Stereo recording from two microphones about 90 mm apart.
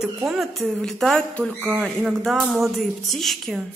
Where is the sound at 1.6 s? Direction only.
15° right (ahead or behind).